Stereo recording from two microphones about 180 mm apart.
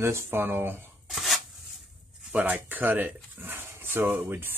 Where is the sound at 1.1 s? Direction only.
Centre (ahead or behind).